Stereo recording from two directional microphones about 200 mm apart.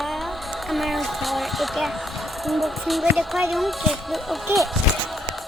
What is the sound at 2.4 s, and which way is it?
Speech, centre (ahead or behind).